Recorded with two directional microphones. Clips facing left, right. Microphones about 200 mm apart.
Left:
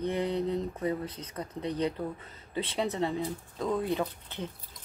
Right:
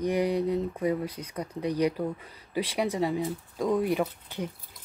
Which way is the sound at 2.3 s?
25° left (ahead or behind).